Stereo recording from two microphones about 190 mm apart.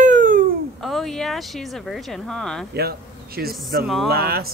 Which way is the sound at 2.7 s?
55° right (ahead or behind).